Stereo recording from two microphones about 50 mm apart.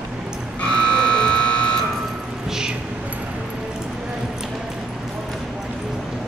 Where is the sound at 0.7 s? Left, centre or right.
Centre.